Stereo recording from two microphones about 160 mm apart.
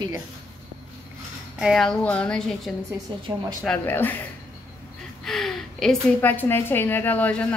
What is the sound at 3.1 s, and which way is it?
Speech, 25° right (ahead or behind).